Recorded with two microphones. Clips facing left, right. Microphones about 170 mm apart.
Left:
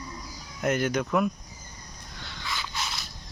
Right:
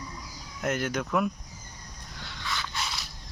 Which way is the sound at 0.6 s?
Centre (ahead or behind).